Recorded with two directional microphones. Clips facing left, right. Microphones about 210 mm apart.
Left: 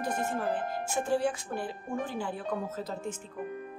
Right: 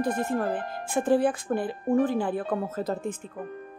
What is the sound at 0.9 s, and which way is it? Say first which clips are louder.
Speech: right 7 dB; 55° right (ahead or behind).